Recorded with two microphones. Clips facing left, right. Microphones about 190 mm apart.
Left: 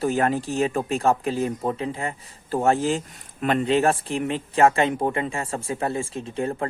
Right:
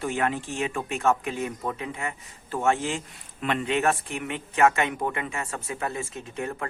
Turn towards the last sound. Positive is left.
turn(degrees=30)  # may be behind; listen again after turning